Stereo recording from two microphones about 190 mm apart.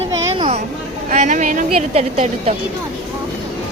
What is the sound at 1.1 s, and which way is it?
A woman's voice, 40° right (ahead or behind).